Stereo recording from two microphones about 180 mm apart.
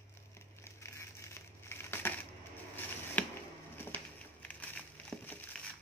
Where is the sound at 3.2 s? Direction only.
10° left (ahead or behind).